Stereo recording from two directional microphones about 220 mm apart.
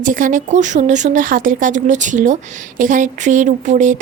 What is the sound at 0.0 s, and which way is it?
Speech, 35° right (ahead or behind).